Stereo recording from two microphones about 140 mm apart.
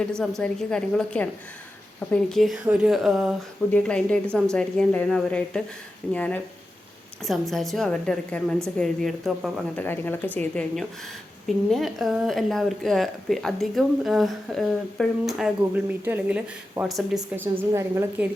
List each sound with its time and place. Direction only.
0.2 s speech: 5° left (ahead or behind)
9.7 s speech: 15° left (ahead or behind); by 16.8 s 15° right (ahead or behind)
16.9 s speech: 5° right (ahead or behind)
17.6 s a woman's voice: 20° right (ahead or behind)